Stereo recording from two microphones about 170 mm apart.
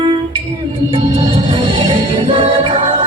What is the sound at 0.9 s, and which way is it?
Music, 30° right (ahead or behind).